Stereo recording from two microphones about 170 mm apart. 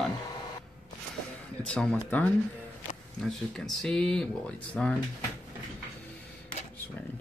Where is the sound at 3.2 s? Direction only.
5° left (ahead or behind).